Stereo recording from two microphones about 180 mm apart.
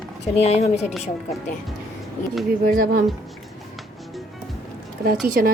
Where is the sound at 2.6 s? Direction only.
50° right (ahead or behind).